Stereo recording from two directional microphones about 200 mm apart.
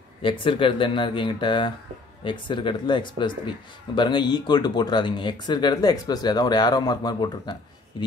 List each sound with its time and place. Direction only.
0.2 s speech: 25° left (ahead or behind)